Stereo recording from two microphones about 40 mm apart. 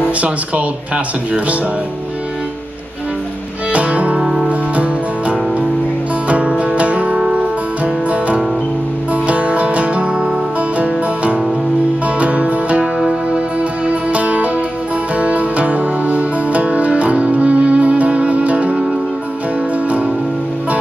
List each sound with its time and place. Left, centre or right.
0.2 s speech: right
3.7 s music: right
4.2 s music: centre
6.2 s music: right
12.2 s music: right